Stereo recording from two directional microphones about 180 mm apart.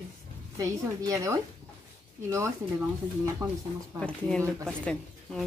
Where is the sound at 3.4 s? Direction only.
20° right (ahead or behind).